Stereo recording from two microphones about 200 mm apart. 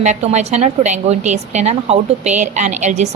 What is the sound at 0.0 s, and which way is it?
A woman's voice, 35° right (ahead or behind).